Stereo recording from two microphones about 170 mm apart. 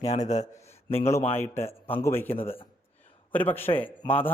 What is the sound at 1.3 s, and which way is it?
Speech, 15° left (ahead or behind).